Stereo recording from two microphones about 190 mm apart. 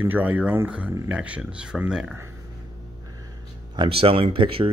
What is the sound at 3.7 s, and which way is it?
Speech, 30° right (ahead or behind).